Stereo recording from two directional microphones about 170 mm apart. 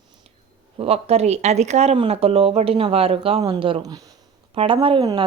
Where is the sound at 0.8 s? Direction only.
35° right (ahead or behind).